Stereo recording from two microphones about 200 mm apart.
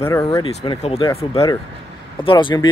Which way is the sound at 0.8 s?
30° left (ahead or behind).